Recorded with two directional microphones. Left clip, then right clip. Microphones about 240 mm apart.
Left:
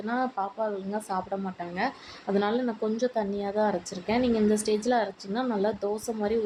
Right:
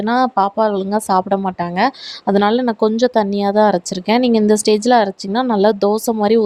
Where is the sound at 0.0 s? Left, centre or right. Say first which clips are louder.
Right 14 dB; right.